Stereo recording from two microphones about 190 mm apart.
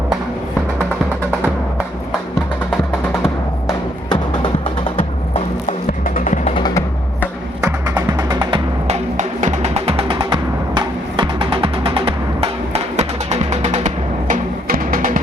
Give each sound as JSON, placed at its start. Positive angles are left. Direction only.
{"t": 4.1, "sound": "music", "side_deg": 25}
{"t": 6.1, "sound": "music", "side_deg": 40}
{"t": 6.5, "sound": "music", "side_deg": 20}
{"t": 7.2, "sound": "music", "side_deg": -20}
{"t": 9.1, "sound": "music", "side_deg": -40}